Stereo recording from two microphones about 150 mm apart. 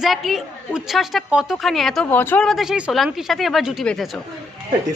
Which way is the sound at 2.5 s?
Centre (ahead or behind).